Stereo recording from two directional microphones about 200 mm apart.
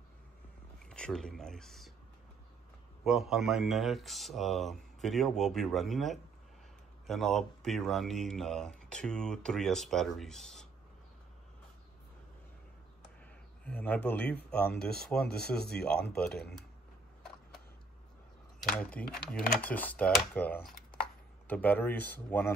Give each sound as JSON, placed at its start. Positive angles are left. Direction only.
{"t": 0.8, "sound": "speech", "side_deg": 5}
{"t": 3.1, "sound": "speech", "side_deg": 0}
{"t": 13.7, "sound": "speech", "side_deg": 10}
{"t": 15.2, "sound": "speech", "side_deg": 55}
{"t": 15.8, "sound": "speech", "side_deg": 5}
{"t": 18.6, "sound": "speech", "side_deg": 5}